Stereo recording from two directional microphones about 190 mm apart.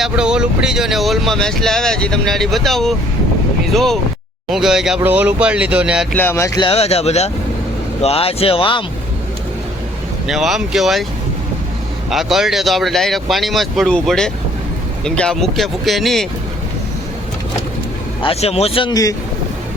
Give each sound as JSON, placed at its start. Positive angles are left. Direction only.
{"t": 0.0, "sound": "speech", "side_deg": -5}
{"t": 6.1, "sound": "music", "side_deg": 15}
{"t": 6.7, "sound": "speech", "side_deg": 30}
{"t": 10.2, "sound": "speech", "side_deg": 0}
{"t": 12.1, "sound": "speech", "side_deg": 0}
{"t": 18.2, "sound": "speech", "side_deg": 30}